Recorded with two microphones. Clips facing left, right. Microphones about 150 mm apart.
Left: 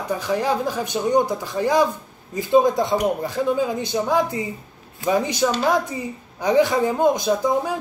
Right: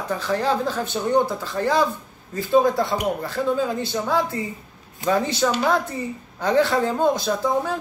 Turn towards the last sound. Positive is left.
turn(degrees=15)  # may be behind; listen again after turning